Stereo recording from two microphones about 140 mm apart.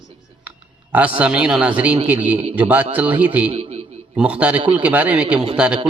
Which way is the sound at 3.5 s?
50° right (ahead or behind).